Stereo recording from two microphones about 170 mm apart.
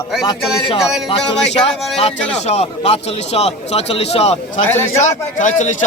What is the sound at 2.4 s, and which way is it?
A man's voice, 40° left (ahead or behind).